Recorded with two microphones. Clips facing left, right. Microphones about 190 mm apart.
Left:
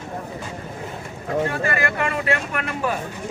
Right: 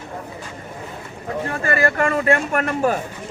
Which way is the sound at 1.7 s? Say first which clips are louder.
Right 5 dB; 40° right (ahead or behind).